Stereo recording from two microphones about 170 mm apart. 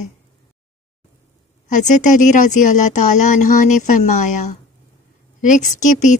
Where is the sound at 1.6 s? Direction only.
45° left (ahead or behind).